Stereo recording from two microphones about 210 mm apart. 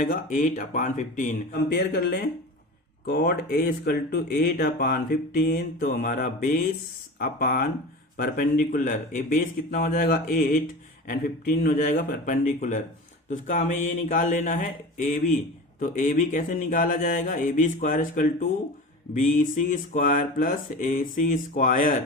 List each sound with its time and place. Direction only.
0.0 s speech: 40° left (ahead or behind)